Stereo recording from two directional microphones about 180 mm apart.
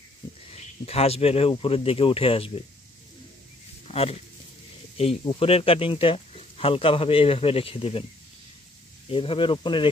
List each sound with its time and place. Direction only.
0.5 s speech: 35° left (ahead or behind)
3.8 s speech: 35° left (ahead or behind)
9.1 s speech: 30° left (ahead or behind)